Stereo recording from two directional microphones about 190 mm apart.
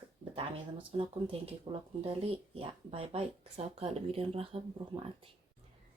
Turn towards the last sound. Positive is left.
turn(degrees=-30)  # may be behind; listen again after turning